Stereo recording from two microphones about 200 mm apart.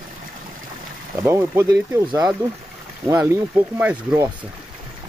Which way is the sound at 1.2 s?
10° right (ahead or behind).